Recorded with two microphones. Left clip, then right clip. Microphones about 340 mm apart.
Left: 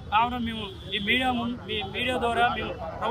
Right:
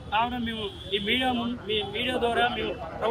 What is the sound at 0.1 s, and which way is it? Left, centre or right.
Speech, centre.